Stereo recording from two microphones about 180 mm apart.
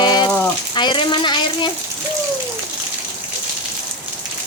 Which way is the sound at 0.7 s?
25° left (ahead or behind).